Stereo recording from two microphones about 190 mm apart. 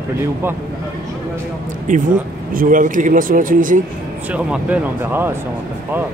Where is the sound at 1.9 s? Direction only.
45° right (ahead or behind).